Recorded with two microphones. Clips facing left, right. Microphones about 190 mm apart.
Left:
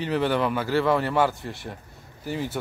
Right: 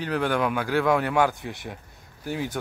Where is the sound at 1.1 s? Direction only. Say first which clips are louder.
Even; 15° right (ahead or behind).